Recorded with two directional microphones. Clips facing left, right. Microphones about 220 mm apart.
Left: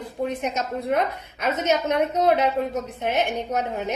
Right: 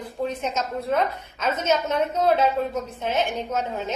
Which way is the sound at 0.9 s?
15° left (ahead or behind).